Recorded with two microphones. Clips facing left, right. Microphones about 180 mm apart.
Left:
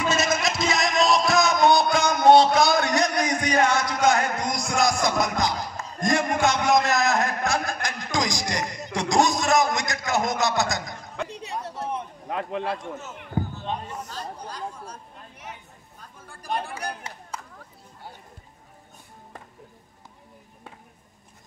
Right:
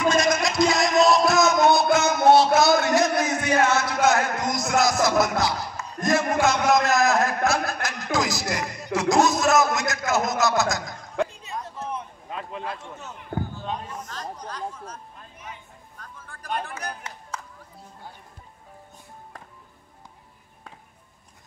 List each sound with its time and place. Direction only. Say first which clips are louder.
0.1 s music: right 2 dB; 5° left (ahead or behind)
5.9 s a sound: right 1 dB; 5° right (ahead or behind)
11.2 s a sound: left 2 dB; 80° left
12.3 s speech: left 6 dB; 70° left (ahead or behind)
14.4 s speech: right 1 dB; 10° left (ahead or behind)
15.3 s speech: even; 70° left (ahead or behind)
16.5 s speech: left 1 dB; 30° left (ahead or behind)